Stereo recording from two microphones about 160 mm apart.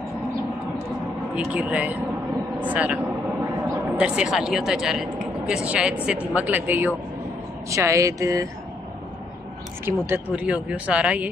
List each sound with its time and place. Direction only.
1.3 s speech: 10° right (ahead or behind)
3.6 s a sound: 15° right (ahead or behind)
4.0 s speech: 5° right (ahead or behind)
9.8 s speech: 15° right (ahead or behind)